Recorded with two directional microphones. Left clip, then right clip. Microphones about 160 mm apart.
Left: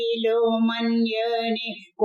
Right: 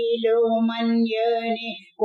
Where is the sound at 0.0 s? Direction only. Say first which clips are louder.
Right 1 dB; 35° left (ahead or behind).